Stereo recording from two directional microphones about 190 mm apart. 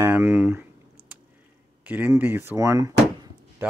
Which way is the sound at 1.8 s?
10° right (ahead or behind).